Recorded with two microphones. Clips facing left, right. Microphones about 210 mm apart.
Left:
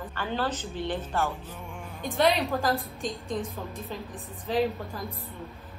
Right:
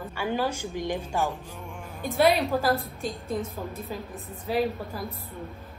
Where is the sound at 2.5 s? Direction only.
15° right (ahead or behind).